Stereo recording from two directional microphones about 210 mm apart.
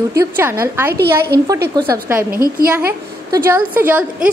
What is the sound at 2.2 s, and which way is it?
Speech, 45° right (ahead or behind).